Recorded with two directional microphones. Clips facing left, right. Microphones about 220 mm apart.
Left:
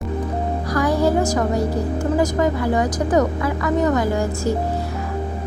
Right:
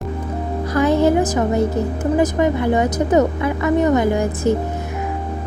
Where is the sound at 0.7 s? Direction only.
25° right (ahead or behind).